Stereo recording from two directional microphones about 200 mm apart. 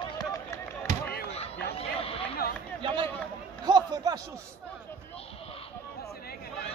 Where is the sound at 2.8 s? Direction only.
25° right (ahead or behind).